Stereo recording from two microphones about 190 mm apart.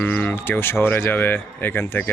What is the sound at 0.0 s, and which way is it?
Speech, 10° left (ahead or behind).